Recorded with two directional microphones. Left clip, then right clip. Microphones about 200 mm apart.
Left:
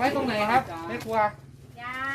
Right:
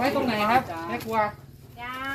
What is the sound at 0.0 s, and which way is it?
Speech, centre (ahead or behind).